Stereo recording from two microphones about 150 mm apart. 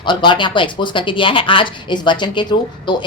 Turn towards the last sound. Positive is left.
turn(degrees=30)  # may be behind; listen again after turning